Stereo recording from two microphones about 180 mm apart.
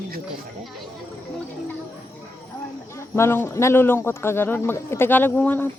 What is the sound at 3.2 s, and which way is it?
Speech, 15° left (ahead or behind).